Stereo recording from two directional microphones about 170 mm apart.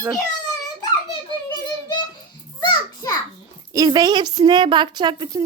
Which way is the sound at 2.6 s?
25° left (ahead or behind).